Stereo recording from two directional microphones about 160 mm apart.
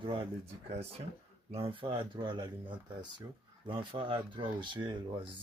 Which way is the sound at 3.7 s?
30° right (ahead or behind).